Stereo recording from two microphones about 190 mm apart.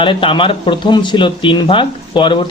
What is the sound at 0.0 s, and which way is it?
Speech, 25° left (ahead or behind).